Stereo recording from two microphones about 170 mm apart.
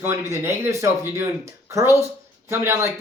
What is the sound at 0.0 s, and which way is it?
Speech, 15° right (ahead or behind).